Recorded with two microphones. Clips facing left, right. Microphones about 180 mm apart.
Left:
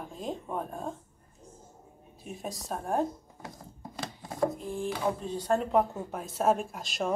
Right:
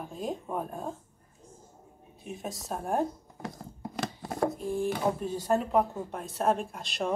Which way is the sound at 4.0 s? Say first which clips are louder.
Even; 70° right (ahead or behind).